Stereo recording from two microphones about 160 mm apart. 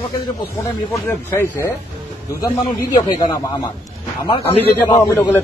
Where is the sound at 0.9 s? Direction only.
15° left (ahead or behind).